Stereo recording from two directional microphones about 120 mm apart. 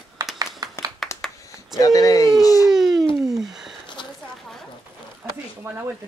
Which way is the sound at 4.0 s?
40° left (ahead or behind).